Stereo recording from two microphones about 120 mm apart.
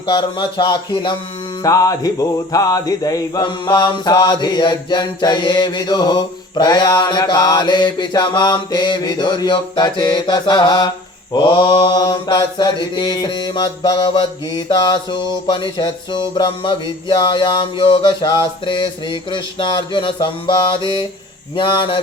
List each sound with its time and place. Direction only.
0.0 s mantra: 40° left (ahead or behind)
21.5 s speech: 45° left (ahead or behind)